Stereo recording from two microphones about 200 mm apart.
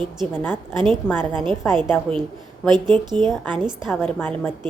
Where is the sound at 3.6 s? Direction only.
Centre (ahead or behind).